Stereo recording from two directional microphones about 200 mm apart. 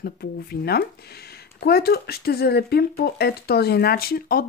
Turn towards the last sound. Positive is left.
turn(degrees=50)  # may be behind; listen again after turning